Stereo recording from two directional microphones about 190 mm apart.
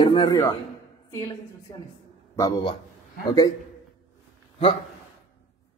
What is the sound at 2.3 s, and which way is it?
Speech, 15° left (ahead or behind).